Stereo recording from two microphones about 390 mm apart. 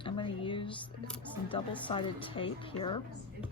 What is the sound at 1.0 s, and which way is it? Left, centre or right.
Music, centre.